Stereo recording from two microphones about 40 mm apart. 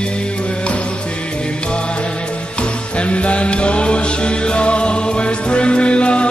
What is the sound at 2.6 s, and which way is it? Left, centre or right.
Music, left.